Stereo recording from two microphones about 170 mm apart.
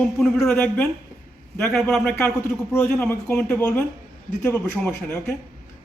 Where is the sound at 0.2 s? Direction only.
5° left (ahead or behind).